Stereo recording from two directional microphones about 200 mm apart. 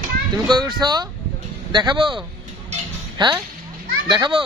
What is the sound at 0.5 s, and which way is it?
Speech, 20° right (ahead or behind).